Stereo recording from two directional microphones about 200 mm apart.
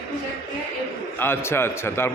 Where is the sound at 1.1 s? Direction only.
10° left (ahead or behind).